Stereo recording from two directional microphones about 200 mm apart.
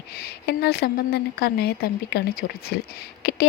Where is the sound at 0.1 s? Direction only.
50° left (ahead or behind).